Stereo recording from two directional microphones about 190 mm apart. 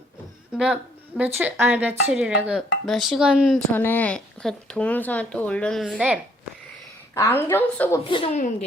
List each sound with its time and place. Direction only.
0.5 s speech: 5° right (ahead or behind)
3.7 s speech: 10° left (ahead or behind)
7.1 s speech: 15° left (ahead or behind)
8.0 s speech: 30° left (ahead or behind)